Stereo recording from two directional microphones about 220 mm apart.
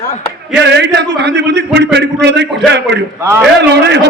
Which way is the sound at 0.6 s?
50° right (ahead or behind).